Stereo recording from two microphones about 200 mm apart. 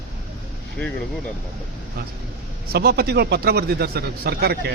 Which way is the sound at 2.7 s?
55° right (ahead or behind).